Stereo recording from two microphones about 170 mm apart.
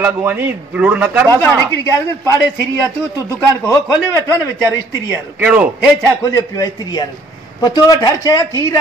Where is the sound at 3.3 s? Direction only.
15° left (ahead or behind).